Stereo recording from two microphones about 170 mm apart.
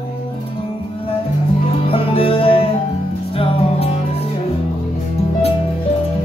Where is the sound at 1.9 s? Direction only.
35° left (ahead or behind).